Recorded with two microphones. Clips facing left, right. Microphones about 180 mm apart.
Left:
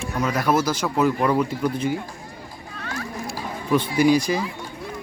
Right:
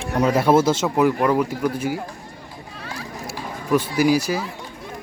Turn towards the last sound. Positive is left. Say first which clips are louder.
# even
turn(degrees=-5)  # may be behind; listen again after turning